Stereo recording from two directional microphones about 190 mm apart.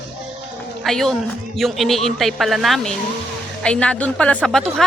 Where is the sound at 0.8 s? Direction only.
Centre (ahead or behind).